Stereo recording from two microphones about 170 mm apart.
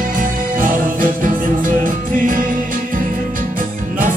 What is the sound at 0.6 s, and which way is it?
Music, 55° right (ahead or behind).